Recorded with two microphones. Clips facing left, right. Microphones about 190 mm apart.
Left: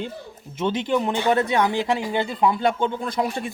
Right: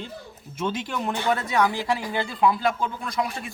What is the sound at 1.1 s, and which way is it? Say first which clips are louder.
Speech: left 1 dB; 20° left (ahead or behind).